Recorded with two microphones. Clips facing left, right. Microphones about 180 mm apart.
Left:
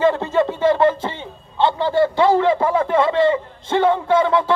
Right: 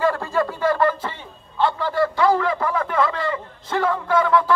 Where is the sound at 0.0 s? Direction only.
20° left (ahead or behind).